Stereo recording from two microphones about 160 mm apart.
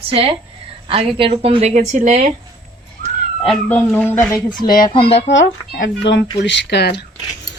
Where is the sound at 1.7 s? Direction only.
50° right (ahead or behind).